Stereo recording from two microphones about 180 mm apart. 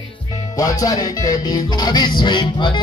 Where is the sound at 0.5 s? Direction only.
20° left (ahead or behind).